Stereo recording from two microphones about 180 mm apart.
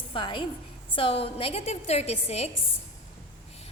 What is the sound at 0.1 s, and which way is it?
A woman's voice, 30° left (ahead or behind).